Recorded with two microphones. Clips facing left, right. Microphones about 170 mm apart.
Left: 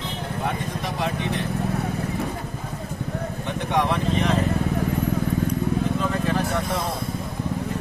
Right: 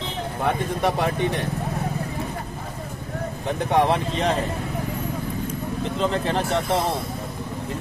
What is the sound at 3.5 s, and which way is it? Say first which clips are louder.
Speech: right 4 dB; 35° right (ahead or behind).